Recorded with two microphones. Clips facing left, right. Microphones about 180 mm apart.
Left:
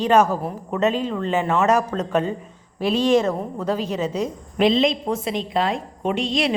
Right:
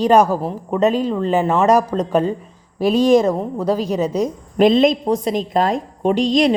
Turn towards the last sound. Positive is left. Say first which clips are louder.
# right 7 dB
turn(degrees=-40)  # may be behind; listen again after turning